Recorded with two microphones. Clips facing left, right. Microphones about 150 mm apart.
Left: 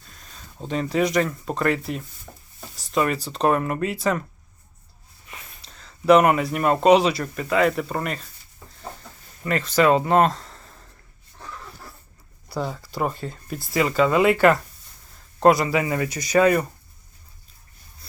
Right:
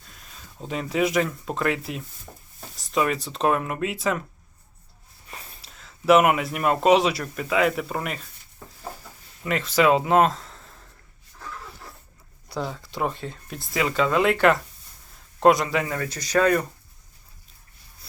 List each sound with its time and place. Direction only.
0.1 s speech: centre (ahead or behind)
2.3 s a sound: 10° right (ahead or behind)
2.7 s speech: centre (ahead or behind)
5.3 s a sound: 35° right (ahead or behind)
5.6 s speech: 5° right (ahead or behind)
9.4 s speech: centre (ahead or behind)
12.5 s speech: 5° left (ahead or behind)